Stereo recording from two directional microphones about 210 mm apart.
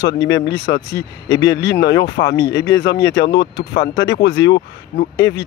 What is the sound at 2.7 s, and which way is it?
Speech, 55° left (ahead or behind).